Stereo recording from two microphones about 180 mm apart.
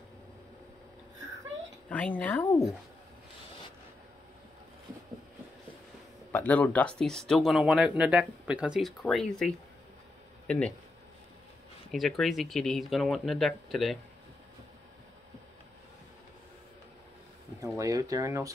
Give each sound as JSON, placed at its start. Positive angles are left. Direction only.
{"t": 1.9, "sound": "speech", "side_deg": 10}
{"t": 6.3, "sound": "speech", "side_deg": 10}
{"t": 11.9, "sound": "speech", "side_deg": 0}
{"t": 17.7, "sound": "speech", "side_deg": -20}